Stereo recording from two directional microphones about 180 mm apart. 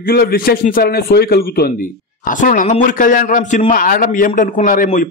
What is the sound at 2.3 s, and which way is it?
A man's voice, 45° left (ahead or behind).